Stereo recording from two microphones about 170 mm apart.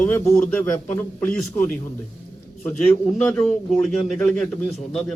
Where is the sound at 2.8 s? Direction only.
5° left (ahead or behind).